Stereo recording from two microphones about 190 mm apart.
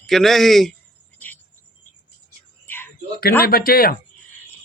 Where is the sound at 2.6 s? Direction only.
10° left (ahead or behind).